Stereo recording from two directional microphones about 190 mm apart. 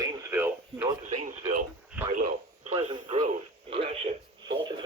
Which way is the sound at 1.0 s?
40° right (ahead or behind).